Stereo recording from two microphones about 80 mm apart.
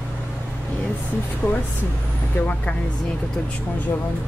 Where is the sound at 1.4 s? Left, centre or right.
Left.